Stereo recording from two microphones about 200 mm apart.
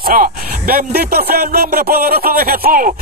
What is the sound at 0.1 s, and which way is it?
Speech, 45° right (ahead or behind).